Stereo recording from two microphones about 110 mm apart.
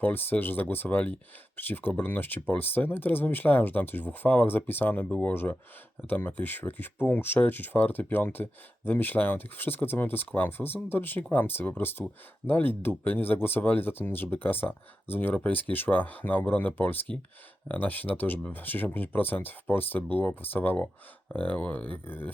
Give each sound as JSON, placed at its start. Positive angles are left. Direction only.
{"t": 0.0, "sound": "speech", "side_deg": 15}